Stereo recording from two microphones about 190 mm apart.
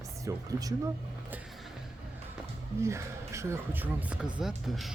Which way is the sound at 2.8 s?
15° right (ahead or behind).